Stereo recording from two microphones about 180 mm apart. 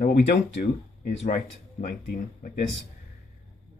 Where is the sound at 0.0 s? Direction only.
60° left (ahead or behind).